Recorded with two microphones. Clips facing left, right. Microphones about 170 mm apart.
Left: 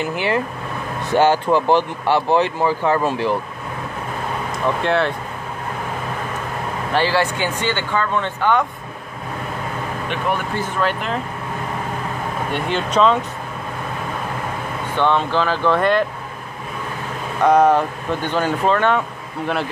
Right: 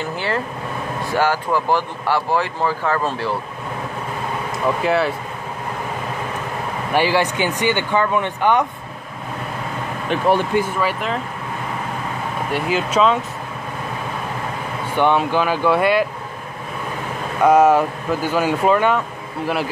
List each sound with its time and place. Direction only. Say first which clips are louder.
0.0 s speech: left 3 dB; 15° left (ahead or behind)
4.6 s speech: even; 5° right (ahead or behind)
6.9 s speech: right 1 dB; 15° right (ahead or behind)
10.0 s speech: right 6 dB; 35° right (ahead or behind)
10.5 s speech: right 2 dB; 10° right (ahead or behind)
12.4 s speech: right 2 dB; 5° right (ahead or behind)
15.0 s speech: right 1 dB; 15° right (ahead or behind)
17.4 s speech: right 1 dB; 10° right (ahead or behind)